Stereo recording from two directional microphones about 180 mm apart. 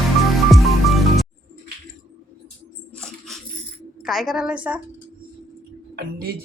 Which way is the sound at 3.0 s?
5° left (ahead or behind).